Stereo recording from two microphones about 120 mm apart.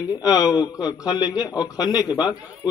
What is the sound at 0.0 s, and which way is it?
Speech, 35° left (ahead or behind).